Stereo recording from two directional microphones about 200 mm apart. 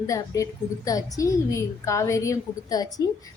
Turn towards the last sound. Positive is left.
turn(degrees=20)  # may be behind; listen again after turning